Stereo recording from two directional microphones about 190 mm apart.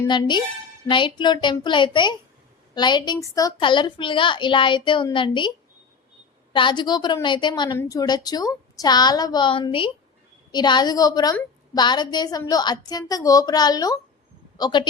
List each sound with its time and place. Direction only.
0.1 s a woman's voice: 25° left (ahead or behind)